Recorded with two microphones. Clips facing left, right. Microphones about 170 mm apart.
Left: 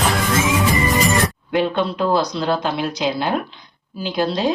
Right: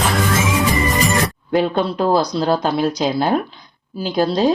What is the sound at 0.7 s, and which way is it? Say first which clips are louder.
Music: even; centre (ahead or behind).